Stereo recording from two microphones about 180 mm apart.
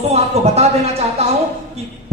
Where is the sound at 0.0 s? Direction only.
35° right (ahead or behind).